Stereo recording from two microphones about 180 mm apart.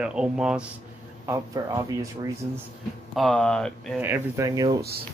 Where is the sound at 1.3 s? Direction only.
20° right (ahead or behind).